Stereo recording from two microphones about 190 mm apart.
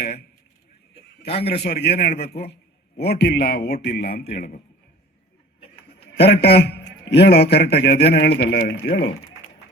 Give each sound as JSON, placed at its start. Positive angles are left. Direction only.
{"t": 0.0, "sound": "a sound", "side_deg": 55}
{"t": 1.5, "sound": "a man's voice", "side_deg": 60}
{"t": 6.1, "sound": "a man's voice", "side_deg": 60}
{"t": 8.8, "sound": "speech", "side_deg": 75}